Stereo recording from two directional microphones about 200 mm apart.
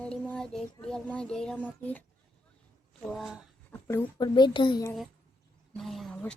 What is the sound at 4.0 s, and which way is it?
Speech, 20° left (ahead or behind).